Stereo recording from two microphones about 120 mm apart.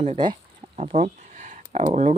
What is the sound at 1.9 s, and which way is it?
Speech, 75° right (ahead or behind).